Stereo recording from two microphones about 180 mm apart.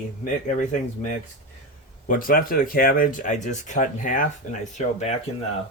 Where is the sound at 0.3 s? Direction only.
45° left (ahead or behind).